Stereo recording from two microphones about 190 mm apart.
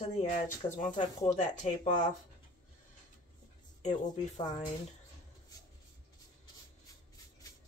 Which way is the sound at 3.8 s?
35° left (ahead or behind).